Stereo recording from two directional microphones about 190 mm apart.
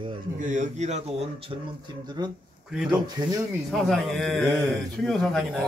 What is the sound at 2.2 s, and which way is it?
Speech, 20° right (ahead or behind).